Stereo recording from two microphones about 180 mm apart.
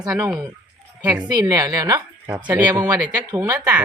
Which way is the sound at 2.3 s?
10° right (ahead or behind).